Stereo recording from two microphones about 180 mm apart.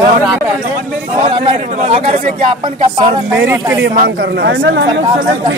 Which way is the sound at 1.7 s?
40° right (ahead or behind).